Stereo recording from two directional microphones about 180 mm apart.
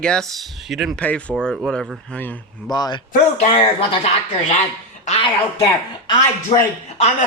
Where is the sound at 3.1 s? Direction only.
35° left (ahead or behind).